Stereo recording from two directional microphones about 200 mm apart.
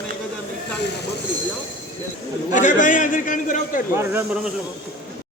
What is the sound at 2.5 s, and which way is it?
A man's voice, 40° left (ahead or behind).